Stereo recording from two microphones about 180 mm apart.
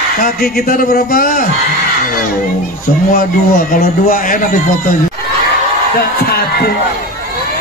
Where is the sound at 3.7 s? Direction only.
55° left (ahead or behind).